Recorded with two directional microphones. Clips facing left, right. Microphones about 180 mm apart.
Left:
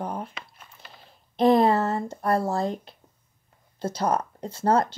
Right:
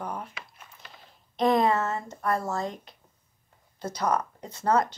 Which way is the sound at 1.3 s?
30° left (ahead or behind).